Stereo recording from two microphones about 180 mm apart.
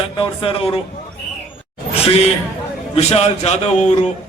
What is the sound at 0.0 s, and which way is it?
Speech, 30° left (ahead or behind).